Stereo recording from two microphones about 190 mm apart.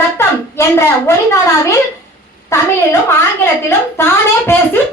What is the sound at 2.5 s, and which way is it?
Speech, 15° left (ahead or behind).